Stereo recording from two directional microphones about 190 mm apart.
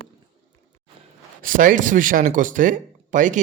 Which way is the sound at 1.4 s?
45° right (ahead or behind).